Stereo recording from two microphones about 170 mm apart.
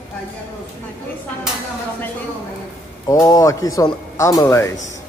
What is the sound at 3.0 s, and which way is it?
Speech, 20° left (ahead or behind).